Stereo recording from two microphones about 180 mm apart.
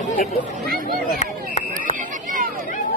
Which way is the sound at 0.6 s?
50° right (ahead or behind).